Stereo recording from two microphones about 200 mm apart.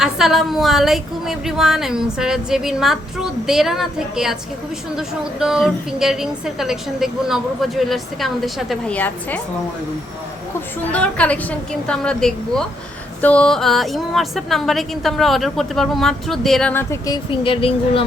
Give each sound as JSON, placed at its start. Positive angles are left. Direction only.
{"t": 0.0, "sound": "a woman's voice", "side_deg": 0}
{"t": 10.9, "sound": "a woman's voice", "side_deg": 5}
{"t": 17.4, "sound": "speech", "side_deg": 25}